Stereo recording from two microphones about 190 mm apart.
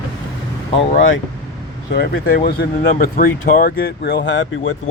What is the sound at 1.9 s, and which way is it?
Speech, 55° left (ahead or behind).